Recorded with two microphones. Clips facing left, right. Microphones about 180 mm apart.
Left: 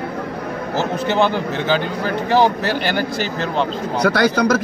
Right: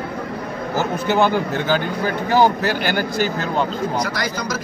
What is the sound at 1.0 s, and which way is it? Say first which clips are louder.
Speech: right 1 dB; 5° right (ahead or behind).